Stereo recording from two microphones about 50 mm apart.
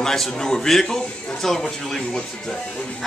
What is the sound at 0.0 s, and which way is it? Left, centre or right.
A man's voice, centre.